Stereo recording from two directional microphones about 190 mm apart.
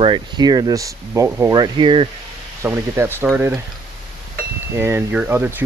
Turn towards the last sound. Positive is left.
turn(degrees=-10)  # may be behind; listen again after turning